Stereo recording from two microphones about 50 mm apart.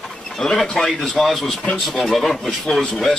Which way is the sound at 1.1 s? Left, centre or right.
Centre.